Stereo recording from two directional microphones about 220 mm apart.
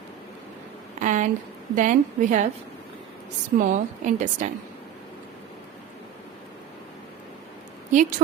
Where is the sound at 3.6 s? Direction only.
35° right (ahead or behind).